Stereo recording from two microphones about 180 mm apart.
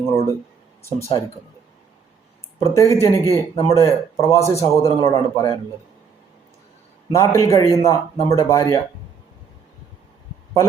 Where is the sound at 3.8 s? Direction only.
15° left (ahead or behind).